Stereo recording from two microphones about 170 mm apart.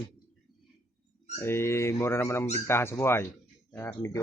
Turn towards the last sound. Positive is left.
turn(degrees=15)  # may be behind; listen again after turning